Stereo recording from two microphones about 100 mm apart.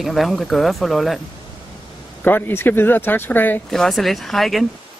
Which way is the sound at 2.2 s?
20° left (ahead or behind).